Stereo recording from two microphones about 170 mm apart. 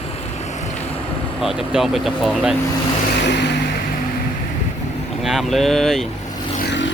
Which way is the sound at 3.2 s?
90° left.